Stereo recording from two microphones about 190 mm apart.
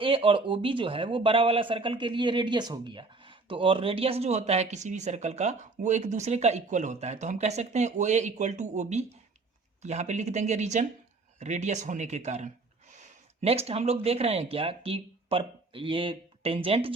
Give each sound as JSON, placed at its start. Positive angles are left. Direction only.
{"t": 0.0, "sound": "speech", "side_deg": -30}